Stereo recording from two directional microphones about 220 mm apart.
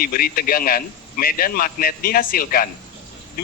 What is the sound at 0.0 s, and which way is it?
A man's voice, 40° left (ahead or behind).